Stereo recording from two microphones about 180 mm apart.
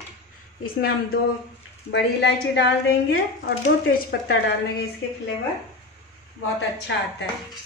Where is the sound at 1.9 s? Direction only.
75° left (ahead or behind).